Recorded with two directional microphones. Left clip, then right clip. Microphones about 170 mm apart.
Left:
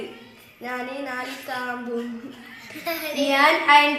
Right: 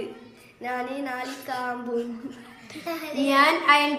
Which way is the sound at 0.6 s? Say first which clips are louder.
Even; 30° right (ahead or behind).